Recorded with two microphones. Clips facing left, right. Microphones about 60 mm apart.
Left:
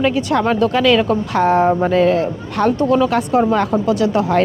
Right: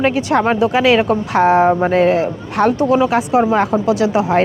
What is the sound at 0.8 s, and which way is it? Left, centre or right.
Speech, right.